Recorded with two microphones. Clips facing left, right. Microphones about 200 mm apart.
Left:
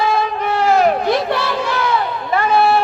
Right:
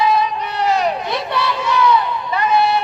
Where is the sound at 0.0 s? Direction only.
50° left (ahead or behind).